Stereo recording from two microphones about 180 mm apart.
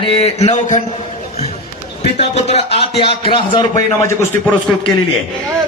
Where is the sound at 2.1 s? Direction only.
35° left (ahead or behind); by 4.1 s 20° left (ahead or behind).